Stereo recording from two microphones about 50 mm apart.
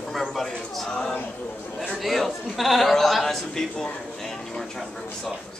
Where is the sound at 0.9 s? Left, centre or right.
Centre.